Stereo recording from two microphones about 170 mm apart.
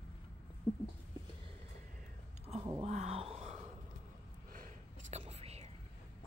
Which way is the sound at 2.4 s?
35° right (ahead or behind).